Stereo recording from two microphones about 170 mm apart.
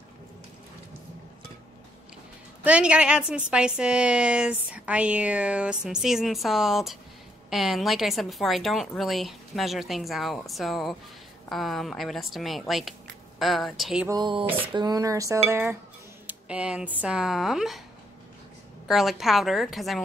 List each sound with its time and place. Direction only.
2.6 s a woman's voice: 5° right (ahead or behind)
14.0 s dishes: 25° right (ahead or behind)
16.3 s a woman's voice: 5° right (ahead or behind)
18.9 s a woman's voice: centre (ahead or behind)